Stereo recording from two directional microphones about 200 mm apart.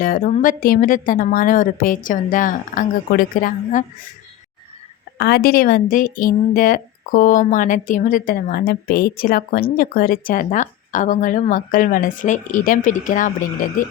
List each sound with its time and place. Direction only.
0.0 s a woman's voice: 45° left (ahead or behind)
5.1 s a woman's voice: 55° left (ahead or behind)